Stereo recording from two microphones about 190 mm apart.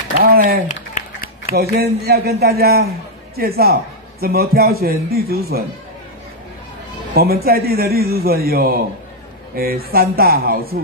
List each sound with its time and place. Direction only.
0.2 s a man's voice: 50° right (ahead or behind)
0.9 s a sound: 40° left (ahead or behind)
1.5 s a man's voice: 55° right (ahead or behind)
7.4 s a man's voice: 55° right (ahead or behind)